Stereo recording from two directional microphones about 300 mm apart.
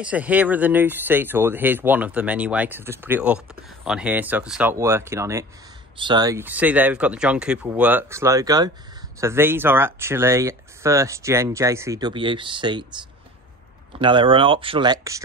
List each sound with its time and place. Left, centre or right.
0.0 s speech: centre